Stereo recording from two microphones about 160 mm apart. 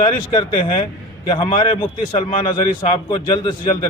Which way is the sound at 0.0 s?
30° left (ahead or behind).